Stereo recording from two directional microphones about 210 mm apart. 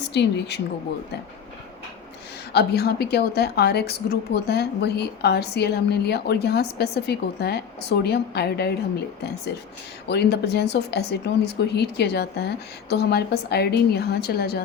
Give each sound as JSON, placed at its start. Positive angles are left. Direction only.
{"t": 0.0, "sound": "a woman's voice", "side_deg": 55}
{"t": 2.5, "sound": "a woman's voice", "side_deg": 50}
{"t": 10.1, "sound": "a woman's voice", "side_deg": 50}